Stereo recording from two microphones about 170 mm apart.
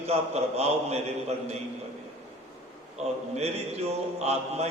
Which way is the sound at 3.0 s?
40° right (ahead or behind).